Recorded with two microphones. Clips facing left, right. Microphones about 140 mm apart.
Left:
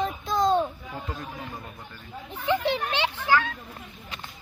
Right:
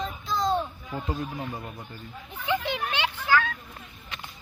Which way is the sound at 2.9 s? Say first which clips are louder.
Right 2 dB; 25° left (ahead or behind).